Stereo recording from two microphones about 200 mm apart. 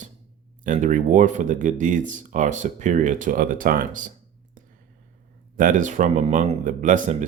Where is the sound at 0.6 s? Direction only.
40° right (ahead or behind).